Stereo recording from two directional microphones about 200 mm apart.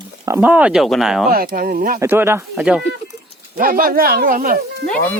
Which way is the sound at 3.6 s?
45° right (ahead or behind).